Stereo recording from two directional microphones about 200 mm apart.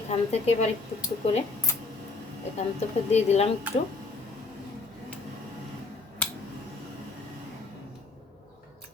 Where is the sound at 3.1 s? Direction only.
35° left (ahead or behind).